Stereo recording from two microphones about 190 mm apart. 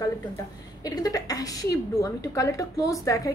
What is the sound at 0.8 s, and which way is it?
A woman's voice, 20° left (ahead or behind).